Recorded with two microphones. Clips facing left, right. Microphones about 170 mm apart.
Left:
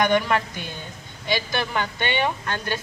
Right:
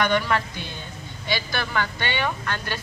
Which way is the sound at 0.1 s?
15° left (ahead or behind).